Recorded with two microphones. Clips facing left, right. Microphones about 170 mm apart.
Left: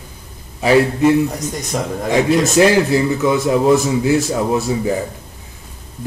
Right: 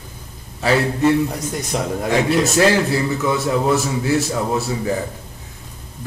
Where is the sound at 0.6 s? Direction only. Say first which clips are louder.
Left 4 dB; 15° left (ahead or behind).